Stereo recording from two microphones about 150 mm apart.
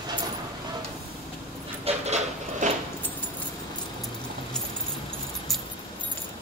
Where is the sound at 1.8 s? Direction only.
45° right (ahead or behind).